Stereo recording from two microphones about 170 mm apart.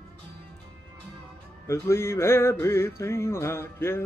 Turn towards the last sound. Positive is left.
turn(degrees=15)  # may be behind; listen again after turning